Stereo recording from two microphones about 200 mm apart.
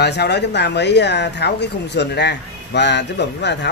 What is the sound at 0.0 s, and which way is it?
Speech, 55° left (ahead or behind).